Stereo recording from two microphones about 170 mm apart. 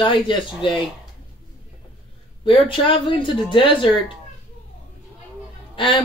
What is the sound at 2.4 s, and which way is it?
Speech, 30° left (ahead or behind).